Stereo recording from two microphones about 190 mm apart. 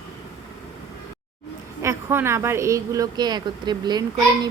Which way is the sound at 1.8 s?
15° right (ahead or behind).